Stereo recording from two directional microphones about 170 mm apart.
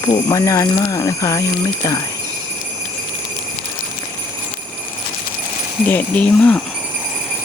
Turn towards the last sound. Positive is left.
turn(degrees=10)  # may be behind; listen again after turning